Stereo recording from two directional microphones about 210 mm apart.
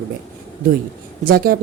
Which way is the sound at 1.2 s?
45° right (ahead or behind).